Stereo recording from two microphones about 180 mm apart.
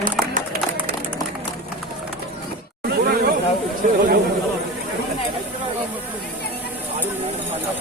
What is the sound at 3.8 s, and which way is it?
Chatter, 50° right (ahead or behind).